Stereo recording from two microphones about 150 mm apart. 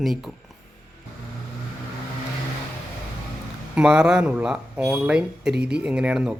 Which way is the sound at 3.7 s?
5° right (ahead or behind).